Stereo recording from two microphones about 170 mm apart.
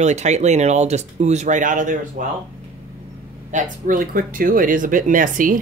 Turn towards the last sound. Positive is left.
turn(degrees=-50)  # may be behind; listen again after turning